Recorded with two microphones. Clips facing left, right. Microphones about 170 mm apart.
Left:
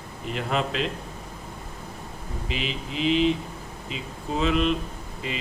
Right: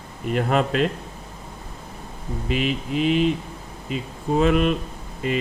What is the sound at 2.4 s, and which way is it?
Speech, 50° right (ahead or behind).